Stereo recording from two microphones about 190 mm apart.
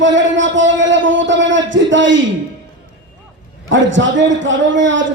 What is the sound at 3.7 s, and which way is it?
A man's voice, 75° right (ahead or behind).